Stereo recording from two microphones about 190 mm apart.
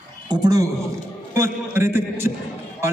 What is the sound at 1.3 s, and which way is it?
A man's voice, 10° right (ahead or behind).